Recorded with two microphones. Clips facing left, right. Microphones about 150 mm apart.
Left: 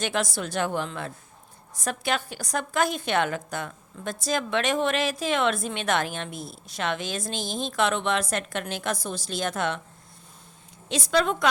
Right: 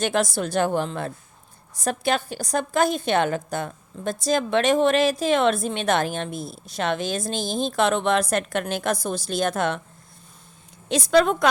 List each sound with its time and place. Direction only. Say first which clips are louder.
0.0 s a woman's voice: right 5 dB; 35° right (ahead or behind)
10.8 s a woman's voice: right 6 dB; 45° right (ahead or behind)